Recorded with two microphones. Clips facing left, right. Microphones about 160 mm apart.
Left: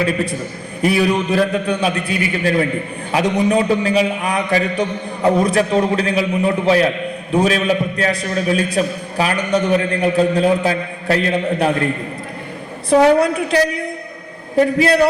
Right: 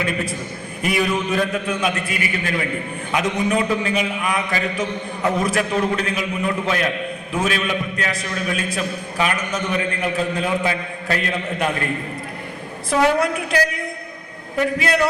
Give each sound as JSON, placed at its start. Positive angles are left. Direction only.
{"t": 0.0, "sound": "a man's voice", "side_deg": 35}
{"t": 12.9, "sound": "a man's voice", "side_deg": 30}